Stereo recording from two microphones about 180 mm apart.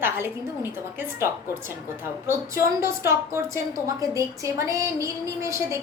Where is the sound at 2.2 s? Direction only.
15° right (ahead or behind).